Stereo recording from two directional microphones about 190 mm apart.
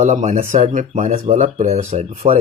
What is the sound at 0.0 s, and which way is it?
Speech, 40° right (ahead or behind).